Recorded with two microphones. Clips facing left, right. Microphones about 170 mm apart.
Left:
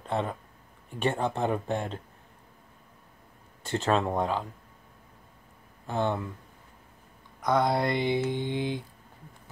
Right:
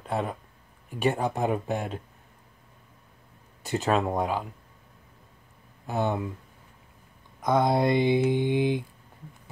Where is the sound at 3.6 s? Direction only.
10° right (ahead or behind).